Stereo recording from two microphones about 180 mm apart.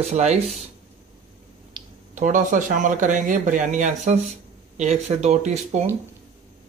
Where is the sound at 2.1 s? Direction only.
45° right (ahead or behind).